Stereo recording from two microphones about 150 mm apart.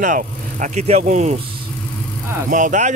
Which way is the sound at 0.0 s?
60° right (ahead or behind).